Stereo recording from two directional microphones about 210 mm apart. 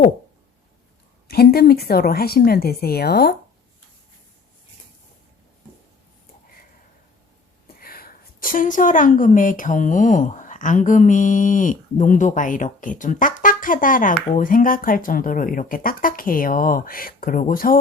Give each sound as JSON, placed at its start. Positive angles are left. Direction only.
{"t": 1.3, "sound": "speech", "side_deg": 45}
{"t": 7.8, "sound": "a woman's voice", "side_deg": 45}